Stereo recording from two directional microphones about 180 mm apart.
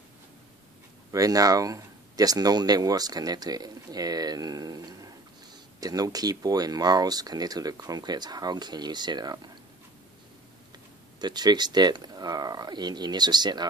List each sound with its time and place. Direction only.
1.1 s speech: 20° right (ahead or behind)
11.1 s speech: 25° right (ahead or behind)